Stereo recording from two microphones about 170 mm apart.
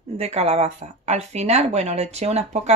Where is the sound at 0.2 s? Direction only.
40° right (ahead or behind).